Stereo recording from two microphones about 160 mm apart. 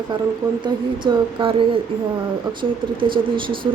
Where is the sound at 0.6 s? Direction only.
30° right (ahead or behind).